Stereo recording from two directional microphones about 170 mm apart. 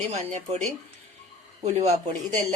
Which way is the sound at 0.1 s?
40° right (ahead or behind).